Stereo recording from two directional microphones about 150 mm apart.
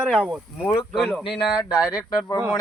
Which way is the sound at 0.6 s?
25° left (ahead or behind).